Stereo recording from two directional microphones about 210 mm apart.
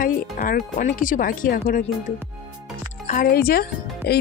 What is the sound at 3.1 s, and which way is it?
Speech, 45° left (ahead or behind).